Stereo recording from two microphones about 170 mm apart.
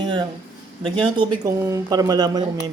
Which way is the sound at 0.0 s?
25° right (ahead or behind).